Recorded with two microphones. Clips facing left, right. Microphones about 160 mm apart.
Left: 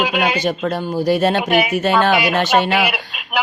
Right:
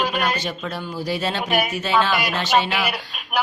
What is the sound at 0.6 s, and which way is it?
Speech, 45° left (ahead or behind).